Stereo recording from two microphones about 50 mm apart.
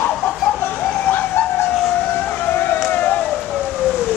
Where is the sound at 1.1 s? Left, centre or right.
Left.